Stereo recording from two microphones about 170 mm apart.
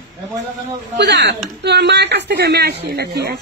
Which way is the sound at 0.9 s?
90° right.